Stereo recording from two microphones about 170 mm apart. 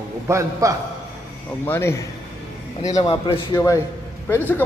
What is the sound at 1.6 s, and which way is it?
Speech, 15° left (ahead or behind).